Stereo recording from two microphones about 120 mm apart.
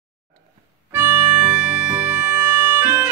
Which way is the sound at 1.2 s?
70° right (ahead or behind).